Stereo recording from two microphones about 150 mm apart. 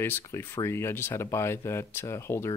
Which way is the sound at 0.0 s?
15° left (ahead or behind).